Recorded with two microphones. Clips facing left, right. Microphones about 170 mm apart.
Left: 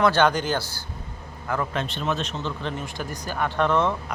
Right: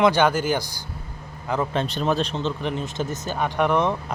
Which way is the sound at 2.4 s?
20° right (ahead or behind).